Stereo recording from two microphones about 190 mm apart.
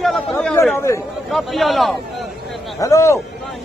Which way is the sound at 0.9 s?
15° left (ahead or behind).